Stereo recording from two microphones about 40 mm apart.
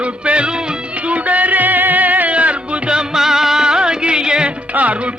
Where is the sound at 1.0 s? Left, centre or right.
Right.